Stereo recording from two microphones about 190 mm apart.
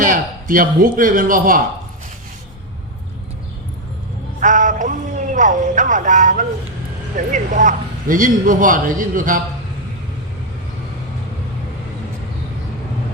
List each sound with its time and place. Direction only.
0.0 s a man's voice: 45° right (ahead or behind)
4.4 s a man's voice: 40° right (ahead or behind)